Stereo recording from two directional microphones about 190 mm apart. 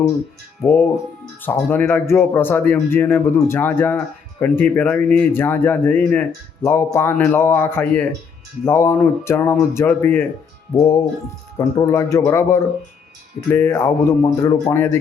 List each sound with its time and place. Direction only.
0.6 s speech: 10° left (ahead or behind)
11.5 s speech: 15° left (ahead or behind)